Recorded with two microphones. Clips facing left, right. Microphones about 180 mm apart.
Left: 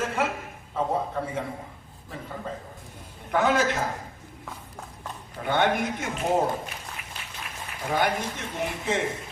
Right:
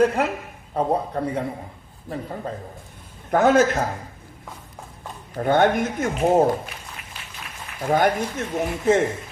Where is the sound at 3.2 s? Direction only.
45° right (ahead or behind).